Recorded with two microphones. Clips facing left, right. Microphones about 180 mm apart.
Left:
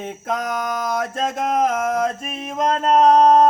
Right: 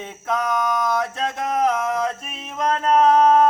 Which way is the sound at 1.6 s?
45° left (ahead or behind).